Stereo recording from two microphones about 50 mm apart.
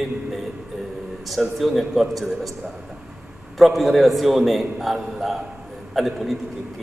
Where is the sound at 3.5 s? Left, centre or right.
Centre.